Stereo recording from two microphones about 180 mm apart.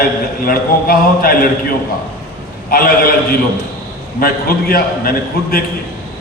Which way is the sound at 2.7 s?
55° left (ahead or behind).